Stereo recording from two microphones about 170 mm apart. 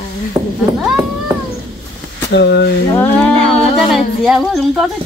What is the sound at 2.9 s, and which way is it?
Speech, 10° left (ahead or behind).